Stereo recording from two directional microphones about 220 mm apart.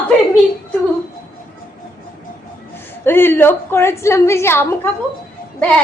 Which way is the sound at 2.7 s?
10° left (ahead or behind).